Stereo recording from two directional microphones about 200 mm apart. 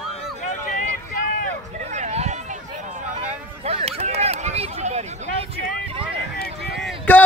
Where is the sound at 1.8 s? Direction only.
35° right (ahead or behind).